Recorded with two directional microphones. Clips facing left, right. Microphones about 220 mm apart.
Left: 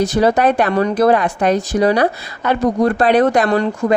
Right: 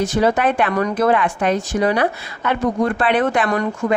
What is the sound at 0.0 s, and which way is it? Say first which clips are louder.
Speech: left 3 dB; 40° left (ahead or behind).